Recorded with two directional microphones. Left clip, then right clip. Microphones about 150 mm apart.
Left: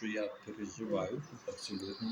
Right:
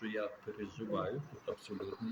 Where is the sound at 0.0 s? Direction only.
5° right (ahead or behind).